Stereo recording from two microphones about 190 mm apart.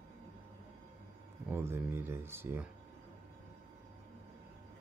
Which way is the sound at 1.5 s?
10° right (ahead or behind).